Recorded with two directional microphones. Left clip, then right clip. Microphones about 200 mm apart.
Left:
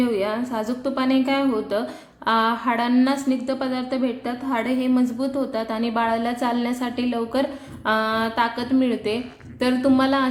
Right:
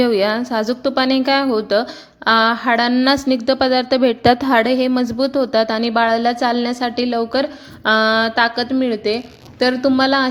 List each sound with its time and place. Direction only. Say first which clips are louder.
0.0 s a woman's voice: right 7 dB; 40° right (ahead or behind)